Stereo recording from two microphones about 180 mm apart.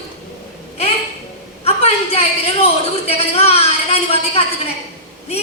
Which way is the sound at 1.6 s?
35° left (ahead or behind).